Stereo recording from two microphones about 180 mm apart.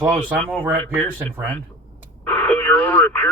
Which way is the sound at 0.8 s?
5° left (ahead or behind).